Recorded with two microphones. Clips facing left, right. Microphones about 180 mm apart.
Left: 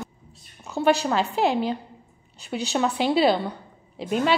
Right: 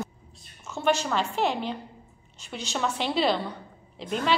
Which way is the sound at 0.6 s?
35° left (ahead or behind).